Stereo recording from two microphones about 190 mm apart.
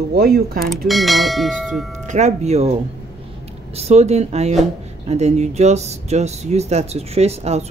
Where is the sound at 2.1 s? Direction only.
35° right (ahead or behind).